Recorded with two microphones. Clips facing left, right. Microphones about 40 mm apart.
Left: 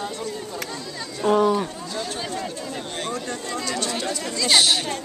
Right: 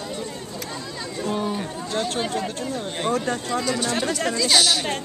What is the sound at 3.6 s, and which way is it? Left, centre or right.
Speech, centre.